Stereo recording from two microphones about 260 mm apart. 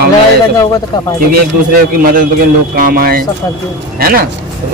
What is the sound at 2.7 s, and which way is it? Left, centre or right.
Speech, right.